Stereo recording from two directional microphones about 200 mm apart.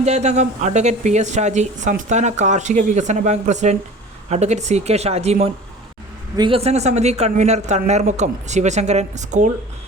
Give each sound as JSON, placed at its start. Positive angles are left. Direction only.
{"t": 0.0, "sound": "a woman's voice", "side_deg": -35}